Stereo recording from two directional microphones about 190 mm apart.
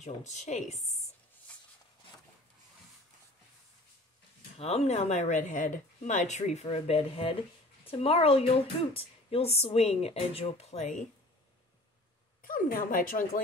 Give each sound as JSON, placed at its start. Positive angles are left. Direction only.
{"t": 0.0, "sound": "speech", "side_deg": 40}
{"t": 4.6, "sound": "speech", "side_deg": 35}
{"t": 12.4, "sound": "speech", "side_deg": 50}